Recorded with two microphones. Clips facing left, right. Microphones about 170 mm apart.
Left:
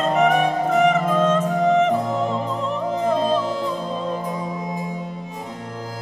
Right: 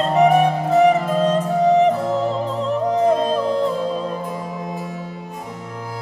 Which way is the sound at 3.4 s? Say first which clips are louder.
Right 4 dB; 60° right (ahead or behind).